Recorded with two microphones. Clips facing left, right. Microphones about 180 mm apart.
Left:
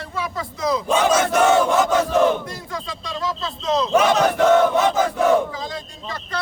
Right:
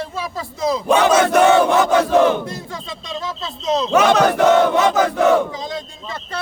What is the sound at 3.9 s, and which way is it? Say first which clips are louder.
Battle cry: right 4 dB; 75° right (ahead or behind).